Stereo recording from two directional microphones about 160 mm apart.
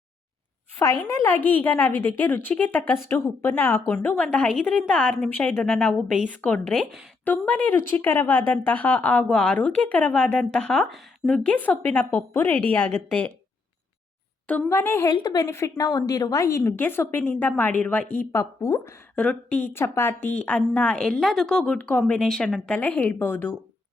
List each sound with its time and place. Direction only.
1.1 s a woman's voice: 15° left (ahead or behind)
7.3 s a woman's voice: 10° left (ahead or behind)
14.7 s a woman's voice: 15° left (ahead or behind)
15.1 s a woman's voice: 25° left (ahead or behind)
19.1 s a woman's voice: 10° left (ahead or behind)